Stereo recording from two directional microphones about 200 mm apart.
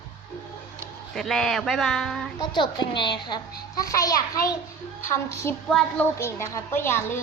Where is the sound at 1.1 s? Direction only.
Centre (ahead or behind).